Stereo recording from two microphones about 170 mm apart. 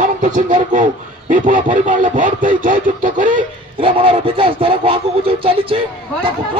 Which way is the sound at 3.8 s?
30° right (ahead or behind).